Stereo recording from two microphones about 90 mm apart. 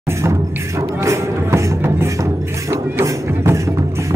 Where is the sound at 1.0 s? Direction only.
30° right (ahead or behind).